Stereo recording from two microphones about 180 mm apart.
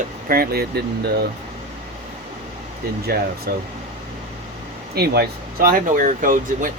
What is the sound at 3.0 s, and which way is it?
Speech, 60° right (ahead or behind).